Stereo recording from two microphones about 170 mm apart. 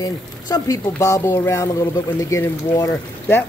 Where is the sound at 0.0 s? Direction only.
20° left (ahead or behind).